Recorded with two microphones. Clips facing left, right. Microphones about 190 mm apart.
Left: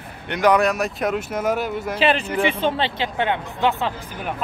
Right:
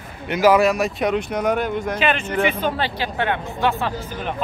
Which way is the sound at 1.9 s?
35° left (ahead or behind).